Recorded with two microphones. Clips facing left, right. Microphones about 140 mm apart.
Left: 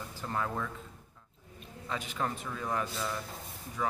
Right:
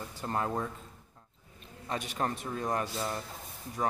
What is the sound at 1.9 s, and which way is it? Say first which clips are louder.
A man's voice: right 2 dB; 40° right (ahead or behind).